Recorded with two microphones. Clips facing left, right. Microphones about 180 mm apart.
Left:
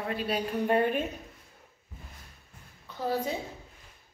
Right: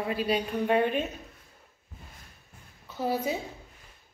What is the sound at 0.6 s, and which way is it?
Speech, 10° left (ahead or behind).